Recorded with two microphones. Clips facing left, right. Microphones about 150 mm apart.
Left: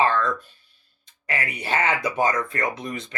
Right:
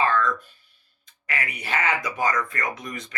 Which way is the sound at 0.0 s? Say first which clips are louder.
Left 1 dB; 30° left (ahead or behind).